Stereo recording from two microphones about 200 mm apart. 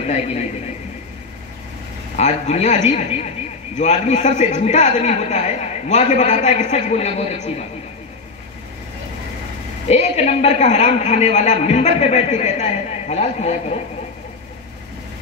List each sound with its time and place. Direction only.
2.1 s a man's voice: 35° left (ahead or behind)
9.8 s a man's voice: 35° left (ahead or behind)